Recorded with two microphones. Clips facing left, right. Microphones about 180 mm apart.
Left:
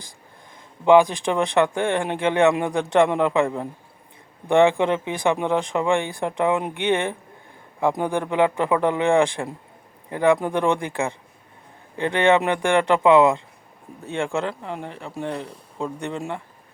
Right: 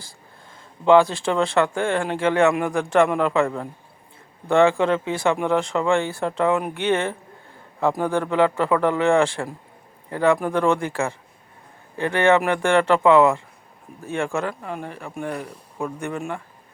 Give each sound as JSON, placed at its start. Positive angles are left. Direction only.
{"t": 0.9, "sound": "speech", "side_deg": 15}